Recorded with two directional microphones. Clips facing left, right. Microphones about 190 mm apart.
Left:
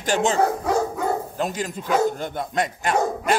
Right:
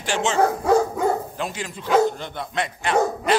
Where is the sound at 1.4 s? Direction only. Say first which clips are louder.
Left 3 dB; 45° left (ahead or behind).